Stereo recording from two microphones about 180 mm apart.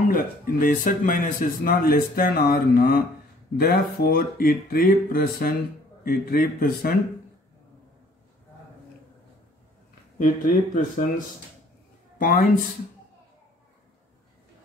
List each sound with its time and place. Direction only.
0.0 s speech: 50° left (ahead or behind)
10.1 s speech: 50° left (ahead or behind)
12.2 s speech: 50° left (ahead or behind)